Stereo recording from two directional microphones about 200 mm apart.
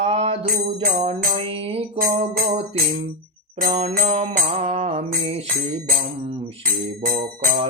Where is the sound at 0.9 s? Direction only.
30° right (ahead or behind).